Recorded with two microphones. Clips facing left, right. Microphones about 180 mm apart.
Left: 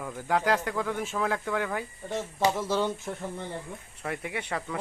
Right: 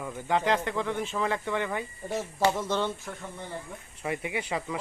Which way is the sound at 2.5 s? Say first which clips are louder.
Left 1 dB; 5° left (ahead or behind).